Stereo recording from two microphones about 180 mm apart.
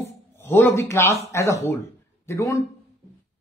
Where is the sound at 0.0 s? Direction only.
15° left (ahead or behind).